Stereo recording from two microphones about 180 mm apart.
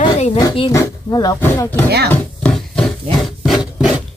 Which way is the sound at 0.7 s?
20° left (ahead or behind).